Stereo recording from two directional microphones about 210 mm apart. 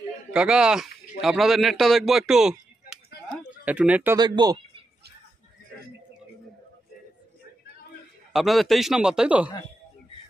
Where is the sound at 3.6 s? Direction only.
5° right (ahead or behind).